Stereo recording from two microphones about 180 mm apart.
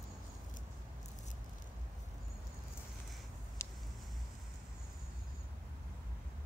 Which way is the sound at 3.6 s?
15° left (ahead or behind).